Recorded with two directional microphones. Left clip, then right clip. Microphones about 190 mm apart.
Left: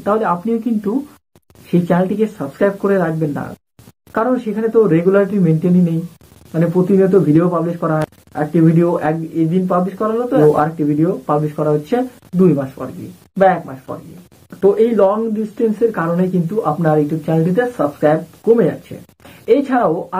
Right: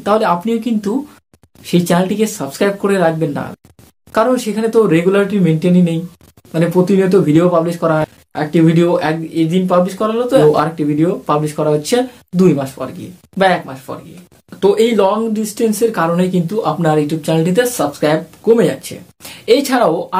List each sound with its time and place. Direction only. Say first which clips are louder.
0.0 s speech: right 3 dB; 25° right (ahead or behind)